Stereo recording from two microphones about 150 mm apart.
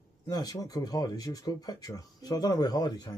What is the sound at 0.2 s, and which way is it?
Speech, 25° left (ahead or behind).